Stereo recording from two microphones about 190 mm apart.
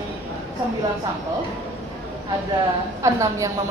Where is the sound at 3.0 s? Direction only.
15° right (ahead or behind).